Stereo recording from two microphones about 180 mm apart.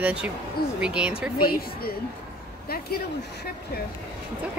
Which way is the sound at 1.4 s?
55° left (ahead or behind).